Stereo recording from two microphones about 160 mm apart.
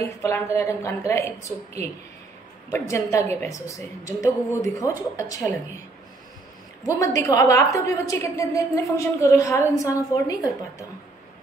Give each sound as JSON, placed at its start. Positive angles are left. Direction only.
{"t": 0.0, "sound": "a woman's voice", "side_deg": 20}
{"t": 2.7, "sound": "a woman's voice", "side_deg": 20}
{"t": 6.8, "sound": "a woman's voice", "side_deg": 20}